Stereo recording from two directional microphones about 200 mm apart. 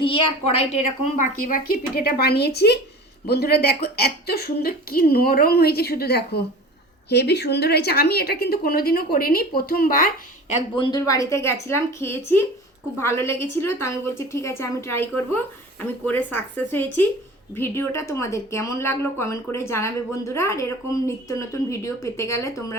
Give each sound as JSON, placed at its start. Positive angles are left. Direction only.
{"t": 0.0, "sound": "a woman's voice", "side_deg": 30}
{"t": 10.5, "sound": "a woman's voice", "side_deg": 20}